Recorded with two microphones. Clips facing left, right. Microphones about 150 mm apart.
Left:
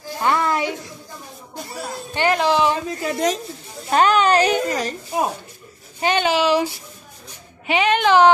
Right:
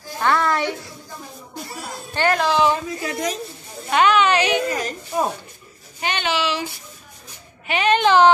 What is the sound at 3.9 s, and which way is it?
A woman's voice, 40° left (ahead or behind).